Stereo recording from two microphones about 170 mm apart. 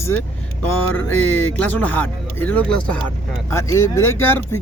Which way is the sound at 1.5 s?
10° left (ahead or behind).